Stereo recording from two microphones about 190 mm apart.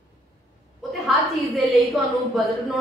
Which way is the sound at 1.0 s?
Centre (ahead or behind).